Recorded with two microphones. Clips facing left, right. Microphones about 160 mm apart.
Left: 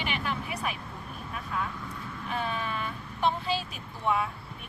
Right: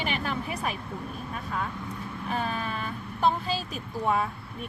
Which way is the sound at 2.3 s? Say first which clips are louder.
Right 1 dB; 40° right (ahead or behind).